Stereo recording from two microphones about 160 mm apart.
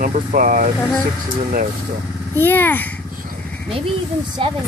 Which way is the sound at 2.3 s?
15° left (ahead or behind).